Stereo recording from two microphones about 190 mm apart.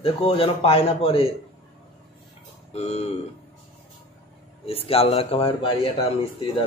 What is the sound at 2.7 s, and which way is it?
Speech, 35° left (ahead or behind).